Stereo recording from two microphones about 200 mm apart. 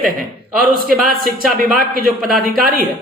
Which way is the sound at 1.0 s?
45° right (ahead or behind).